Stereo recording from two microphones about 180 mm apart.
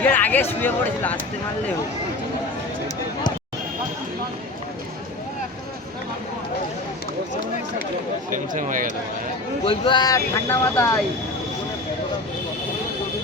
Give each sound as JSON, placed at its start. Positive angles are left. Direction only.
{"t": 0.0, "sound": "speech", "side_deg": 10}
{"t": 8.3, "sound": "speech", "side_deg": -45}
{"t": 9.6, "sound": "speech", "side_deg": 25}